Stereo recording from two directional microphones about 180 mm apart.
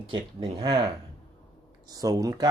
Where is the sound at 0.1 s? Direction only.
30° right (ahead or behind).